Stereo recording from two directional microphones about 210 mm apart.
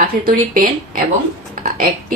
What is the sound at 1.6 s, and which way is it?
Burping, 40° right (ahead or behind).